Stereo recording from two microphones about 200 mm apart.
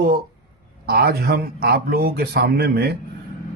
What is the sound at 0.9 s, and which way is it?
Speech, 50° right (ahead or behind).